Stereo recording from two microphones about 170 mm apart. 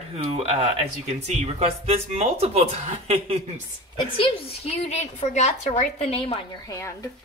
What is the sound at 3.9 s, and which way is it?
A woman's voice, 35° left (ahead or behind).